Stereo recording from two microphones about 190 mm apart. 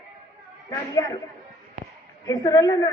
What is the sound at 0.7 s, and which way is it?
Speech, 15° left (ahead or behind).